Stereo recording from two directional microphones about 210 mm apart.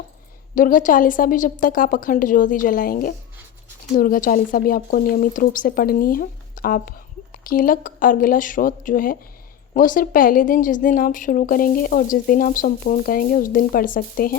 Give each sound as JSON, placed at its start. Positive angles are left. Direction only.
{"t": 0.5, "sound": "a woman's voice", "side_deg": 40}